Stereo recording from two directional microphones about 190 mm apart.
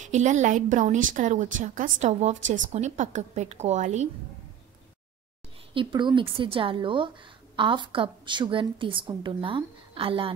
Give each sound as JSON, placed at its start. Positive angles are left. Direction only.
{"t": 0.0, "sound": "a woman's voice", "side_deg": -40}
{"t": 5.8, "sound": "a woman's voice", "side_deg": -25}